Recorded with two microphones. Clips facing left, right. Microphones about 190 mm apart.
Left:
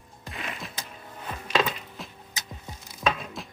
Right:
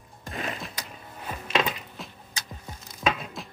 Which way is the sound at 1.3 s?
5° right (ahead or behind).